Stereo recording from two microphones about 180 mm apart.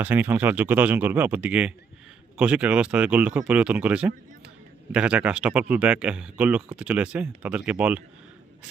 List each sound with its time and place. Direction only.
0.0 s speech: 10° right (ahead or behind)